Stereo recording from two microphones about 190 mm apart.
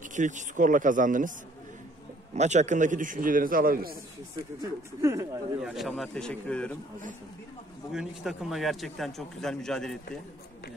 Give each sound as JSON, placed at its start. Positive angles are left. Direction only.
{"t": 0.1, "sound": "a man's voice", "side_deg": -40}
{"t": 2.3, "sound": "a man's voice", "side_deg": -40}
{"t": 4.6, "sound": "speech", "side_deg": -15}
{"t": 5.6, "sound": "a man's voice", "side_deg": 0}
{"t": 7.9, "sound": "a man's voice", "side_deg": 0}